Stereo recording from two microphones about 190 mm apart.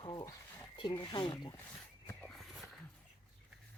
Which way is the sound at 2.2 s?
Centre (ahead or behind).